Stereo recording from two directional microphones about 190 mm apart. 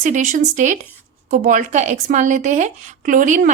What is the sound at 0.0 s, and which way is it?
Speech, 40° right (ahead or behind).